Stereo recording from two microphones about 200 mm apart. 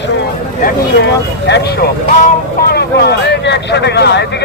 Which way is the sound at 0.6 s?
60° left (ahead or behind).